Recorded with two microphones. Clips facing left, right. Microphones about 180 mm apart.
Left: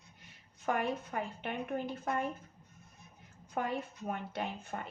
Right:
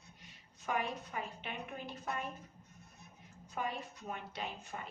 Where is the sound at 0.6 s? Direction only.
55° left (ahead or behind).